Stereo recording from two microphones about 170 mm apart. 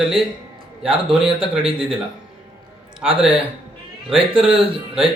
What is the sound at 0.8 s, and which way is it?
Speech, 30° right (ahead or behind).